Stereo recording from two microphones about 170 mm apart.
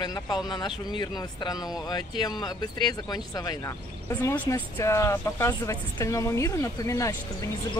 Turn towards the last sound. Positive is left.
turn(degrees=20)  # may be behind; listen again after turning